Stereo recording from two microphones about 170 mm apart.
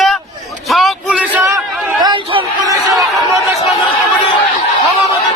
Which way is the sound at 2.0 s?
25° right (ahead or behind).